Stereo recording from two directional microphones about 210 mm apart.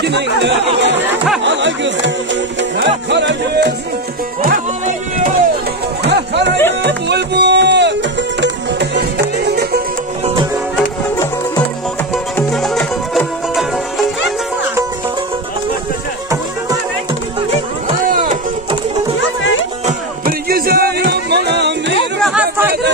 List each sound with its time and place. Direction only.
0.0 s speech: 55° right (ahead or behind)
4.4 s music: 40° right (ahead or behind)
6.0 s music: 55° right (ahead or behind)
12.4 s music: centre (ahead or behind)
18.0 s a sound: 40° right (ahead or behind)
19.9 s music: 45° right (ahead or behind)
22.2 s chatter: 5° right (ahead or behind)